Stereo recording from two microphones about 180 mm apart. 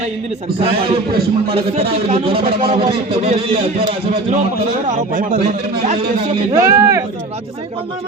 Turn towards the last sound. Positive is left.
turn(degrees=-15)  # may be behind; listen again after turning